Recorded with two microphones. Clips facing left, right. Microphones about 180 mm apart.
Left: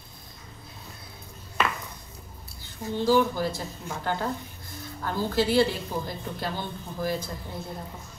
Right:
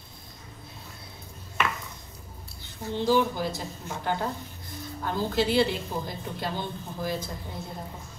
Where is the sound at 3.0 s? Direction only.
15° right (ahead or behind).